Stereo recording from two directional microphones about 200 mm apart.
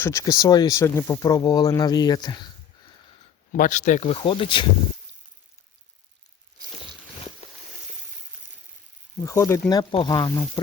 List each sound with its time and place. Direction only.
0.0 s speech: 15° left (ahead or behind)
3.5 s speech: 40° left (ahead or behind); by 4.6 s 25° left (ahead or behind)
9.2 s speech: 15° left (ahead or behind)